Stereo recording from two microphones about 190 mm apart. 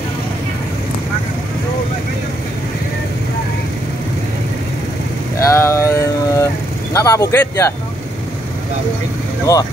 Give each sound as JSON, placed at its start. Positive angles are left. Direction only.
{"t": 5.4, "sound": "vehicle", "side_deg": 15}
{"t": 9.5, "sound": "speech", "side_deg": 15}